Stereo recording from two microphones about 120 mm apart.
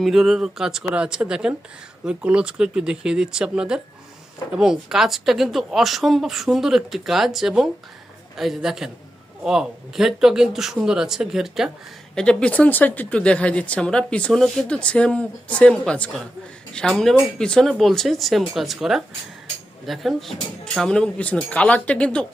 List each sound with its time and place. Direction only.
0.0 s speech: centre (ahead or behind)